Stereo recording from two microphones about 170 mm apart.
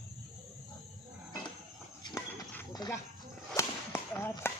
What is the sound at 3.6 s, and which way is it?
Whip, 15° left (ahead or behind).